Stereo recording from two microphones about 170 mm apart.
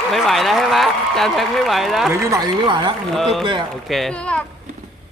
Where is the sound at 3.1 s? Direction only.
Centre (ahead or behind).